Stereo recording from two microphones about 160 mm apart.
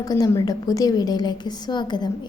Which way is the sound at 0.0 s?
20° left (ahead or behind).